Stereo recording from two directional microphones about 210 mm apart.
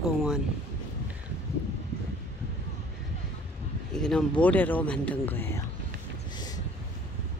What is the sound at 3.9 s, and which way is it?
Speech, 5° left (ahead or behind).